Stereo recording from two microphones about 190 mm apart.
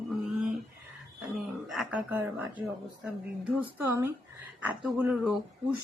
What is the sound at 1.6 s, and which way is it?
Speech, centre (ahead or behind).